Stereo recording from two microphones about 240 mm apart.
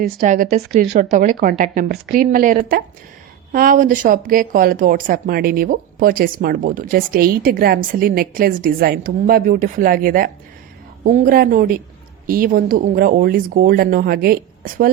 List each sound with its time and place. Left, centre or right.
0.0 s speech: right